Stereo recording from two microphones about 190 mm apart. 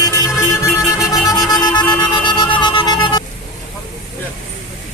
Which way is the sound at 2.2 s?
25° left (ahead or behind).